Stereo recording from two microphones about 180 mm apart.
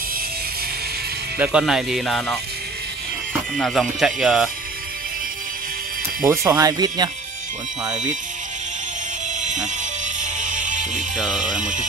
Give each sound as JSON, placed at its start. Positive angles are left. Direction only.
{"t": 1.4, "sound": "speech", "side_deg": -5}
{"t": 3.5, "sound": "speech", "side_deg": 5}
{"t": 6.2, "sound": "speech", "side_deg": -20}
{"t": 9.4, "sound": "music", "side_deg": -45}
{"t": 11.1, "sound": "speech", "side_deg": -5}